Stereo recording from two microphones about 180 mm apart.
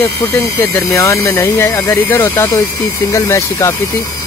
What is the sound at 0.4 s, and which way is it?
Speech, 15° left (ahead or behind).